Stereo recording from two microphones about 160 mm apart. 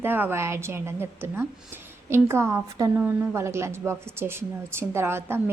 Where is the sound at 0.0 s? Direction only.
15° right (ahead or behind).